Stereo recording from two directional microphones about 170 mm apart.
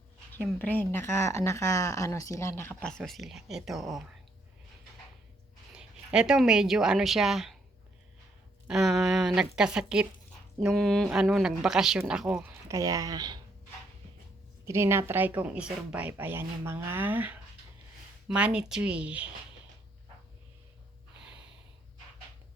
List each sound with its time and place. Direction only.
0.4 s speech: 10° left (ahead or behind)
5.7 s speech: 5° right (ahead or behind)
8.6 s speech: 5° right (ahead or behind)
12.6 s speech: 20° right (ahead or behind)
14.6 s a woman's voice: 15° right (ahead or behind)